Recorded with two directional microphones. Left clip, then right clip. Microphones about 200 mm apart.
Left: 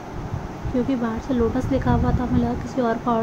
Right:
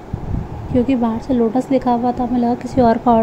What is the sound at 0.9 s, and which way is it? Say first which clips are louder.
Speech: right 6 dB; 25° right (ahead or behind).